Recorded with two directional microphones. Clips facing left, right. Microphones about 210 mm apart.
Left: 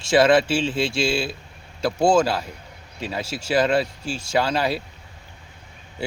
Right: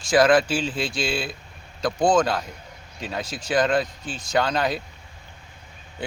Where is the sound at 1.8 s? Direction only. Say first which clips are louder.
Left 2 dB; 10° left (ahead or behind).